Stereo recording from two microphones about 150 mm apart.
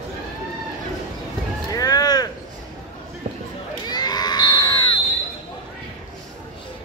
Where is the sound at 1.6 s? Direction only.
25° left (ahead or behind).